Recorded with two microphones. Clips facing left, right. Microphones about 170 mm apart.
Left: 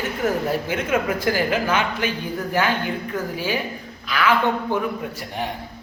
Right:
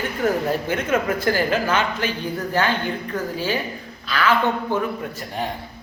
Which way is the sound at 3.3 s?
10° left (ahead or behind).